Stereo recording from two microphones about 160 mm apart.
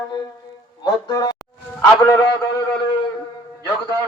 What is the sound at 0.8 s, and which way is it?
Speech, 25° left (ahead or behind).